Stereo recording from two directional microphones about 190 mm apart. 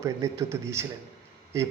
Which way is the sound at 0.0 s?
15° right (ahead or behind).